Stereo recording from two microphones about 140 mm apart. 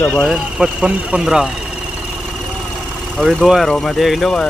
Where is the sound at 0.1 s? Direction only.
5° right (ahead or behind).